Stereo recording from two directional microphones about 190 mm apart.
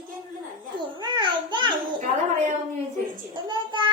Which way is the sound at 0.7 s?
25° right (ahead or behind).